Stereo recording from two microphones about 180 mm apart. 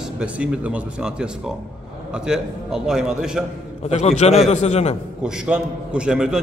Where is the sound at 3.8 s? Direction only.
35° left (ahead or behind).